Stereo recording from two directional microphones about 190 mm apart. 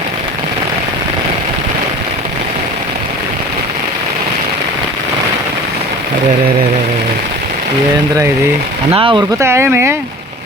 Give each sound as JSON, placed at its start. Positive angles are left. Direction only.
{"t": 9.0, "sound": "speech", "side_deg": -25}
{"t": 9.4, "sound": "speech", "side_deg": -15}